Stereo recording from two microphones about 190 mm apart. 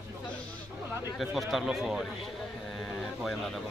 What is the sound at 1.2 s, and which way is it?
Speech, centre (ahead or behind).